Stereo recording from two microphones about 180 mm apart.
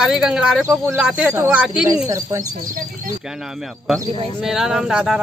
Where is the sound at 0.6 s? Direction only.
10° right (ahead or behind).